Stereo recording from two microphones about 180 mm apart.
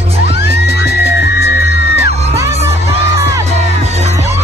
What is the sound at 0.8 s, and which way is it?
Music, 15° right (ahead or behind).